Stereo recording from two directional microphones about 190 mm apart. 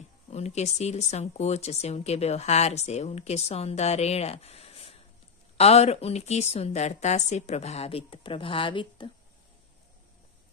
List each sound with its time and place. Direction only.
0.3 s speech: 35° left (ahead or behind)